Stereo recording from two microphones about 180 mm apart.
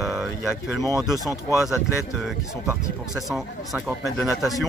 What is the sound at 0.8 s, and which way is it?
Speech, 20° right (ahead or behind).